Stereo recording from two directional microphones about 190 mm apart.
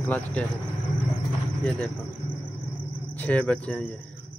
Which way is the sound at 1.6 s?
5° left (ahead or behind).